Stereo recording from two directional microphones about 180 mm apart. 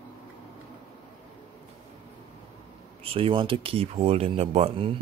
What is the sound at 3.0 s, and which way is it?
Speech, 30° right (ahead or behind).